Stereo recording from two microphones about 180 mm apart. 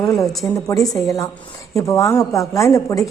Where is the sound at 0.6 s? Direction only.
20° left (ahead or behind).